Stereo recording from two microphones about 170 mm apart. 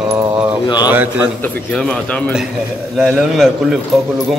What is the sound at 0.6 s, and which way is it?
Speech, 25° left (ahead or behind).